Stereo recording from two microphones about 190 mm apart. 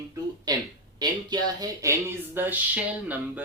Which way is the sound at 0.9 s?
20° right (ahead or behind).